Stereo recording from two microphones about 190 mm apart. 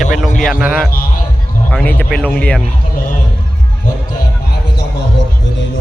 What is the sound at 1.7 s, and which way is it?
Speech, 10° left (ahead or behind).